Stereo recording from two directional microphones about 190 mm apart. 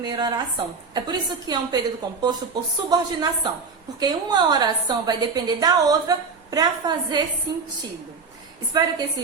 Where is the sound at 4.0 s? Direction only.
20° right (ahead or behind).